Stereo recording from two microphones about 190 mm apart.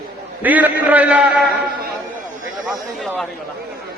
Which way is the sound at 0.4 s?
10° right (ahead or behind).